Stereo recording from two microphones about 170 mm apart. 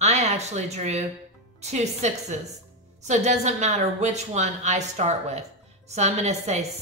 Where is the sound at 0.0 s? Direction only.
40° right (ahead or behind).